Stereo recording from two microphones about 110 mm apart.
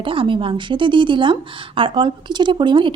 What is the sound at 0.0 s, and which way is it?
A woman's voice, 50° right (ahead or behind).